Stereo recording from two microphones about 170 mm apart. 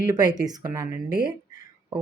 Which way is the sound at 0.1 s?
20° right (ahead or behind).